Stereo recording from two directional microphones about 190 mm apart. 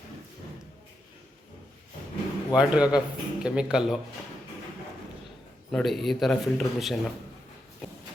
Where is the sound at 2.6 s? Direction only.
5° right (ahead or behind).